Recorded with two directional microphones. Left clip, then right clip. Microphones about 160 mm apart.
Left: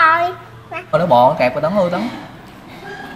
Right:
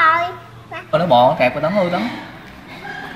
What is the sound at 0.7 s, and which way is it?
Speech, centre (ahead or behind).